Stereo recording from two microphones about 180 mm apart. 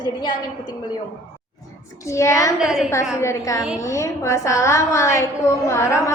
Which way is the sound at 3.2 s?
15° left (ahead or behind).